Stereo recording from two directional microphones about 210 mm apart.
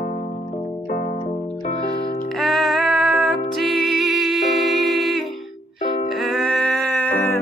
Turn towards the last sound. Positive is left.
turn(degrees=10)  # may be behind; listen again after turning